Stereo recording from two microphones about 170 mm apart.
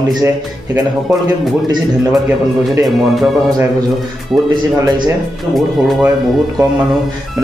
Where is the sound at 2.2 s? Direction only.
15° right (ahead or behind).